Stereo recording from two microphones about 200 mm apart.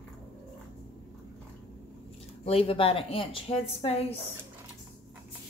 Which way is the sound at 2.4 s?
30° left (ahead or behind).